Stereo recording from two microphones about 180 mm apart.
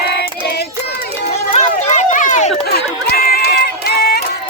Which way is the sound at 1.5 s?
40° left (ahead or behind).